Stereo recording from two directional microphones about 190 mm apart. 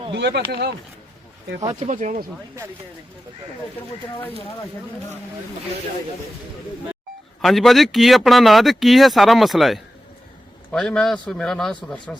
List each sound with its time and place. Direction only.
0.1 s speech: 65° right (ahead or behind)
1.8 s speech: 40° right (ahead or behind)
7.4 s speech: centre (ahead or behind)